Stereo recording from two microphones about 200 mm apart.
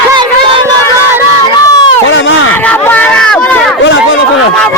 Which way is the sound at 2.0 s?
70° left (ahead or behind).